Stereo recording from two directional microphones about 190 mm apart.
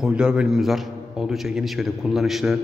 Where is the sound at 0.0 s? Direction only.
5° right (ahead or behind).